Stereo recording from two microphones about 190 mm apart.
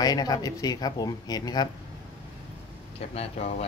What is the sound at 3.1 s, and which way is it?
Speech, 30° left (ahead or behind).